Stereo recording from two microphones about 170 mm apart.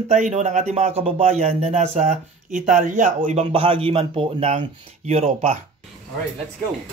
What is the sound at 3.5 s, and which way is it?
Speech, 30° right (ahead or behind).